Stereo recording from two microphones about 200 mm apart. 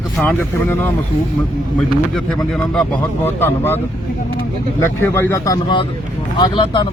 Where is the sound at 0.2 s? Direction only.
10° left (ahead or behind).